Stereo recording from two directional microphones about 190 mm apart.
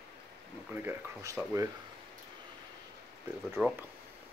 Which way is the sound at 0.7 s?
10° right (ahead or behind).